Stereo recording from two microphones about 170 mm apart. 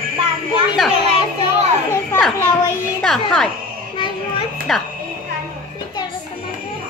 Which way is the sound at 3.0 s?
5° left (ahead or behind).